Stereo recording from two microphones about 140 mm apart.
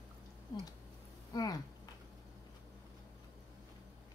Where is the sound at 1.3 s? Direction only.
25° left (ahead or behind).